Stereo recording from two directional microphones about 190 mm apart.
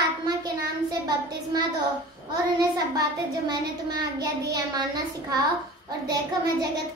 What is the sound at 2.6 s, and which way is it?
A child's voice, 20° right (ahead or behind).